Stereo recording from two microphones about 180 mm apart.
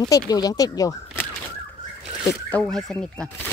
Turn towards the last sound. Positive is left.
turn(degrees=5)  # may be behind; listen again after turning